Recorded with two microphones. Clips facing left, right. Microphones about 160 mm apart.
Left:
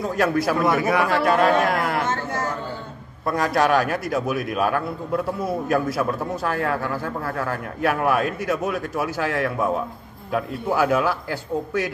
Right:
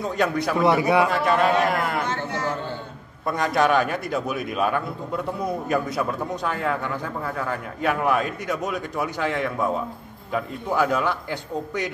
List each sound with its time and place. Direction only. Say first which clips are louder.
0.0 s a man's voice: left 2 dB; 5° left (ahead or behind)
0.6 s a man's voice: right 6 dB; 20° right (ahead or behind)
1.2 s a man's voice: left 2 dB; centre (ahead or behind)
3.3 s a man's voice: left 1 dB; centre (ahead or behind)